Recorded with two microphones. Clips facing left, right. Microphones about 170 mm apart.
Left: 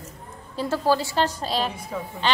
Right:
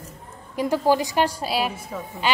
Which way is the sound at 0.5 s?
15° right (ahead or behind).